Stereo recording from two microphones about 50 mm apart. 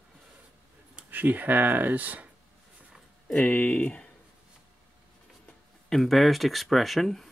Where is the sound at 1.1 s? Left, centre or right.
Right.